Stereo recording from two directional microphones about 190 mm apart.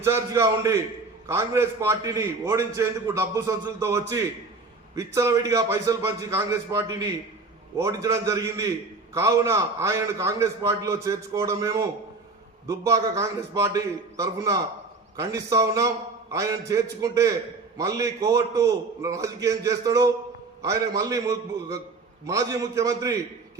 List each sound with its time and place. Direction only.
0.0 s a man's voice: 15° right (ahead or behind)